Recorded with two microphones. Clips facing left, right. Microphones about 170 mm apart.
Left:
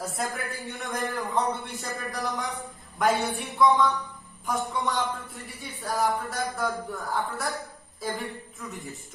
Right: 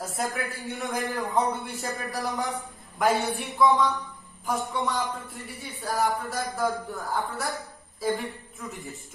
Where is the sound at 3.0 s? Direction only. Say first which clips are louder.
Right 1 dB; centre (ahead or behind).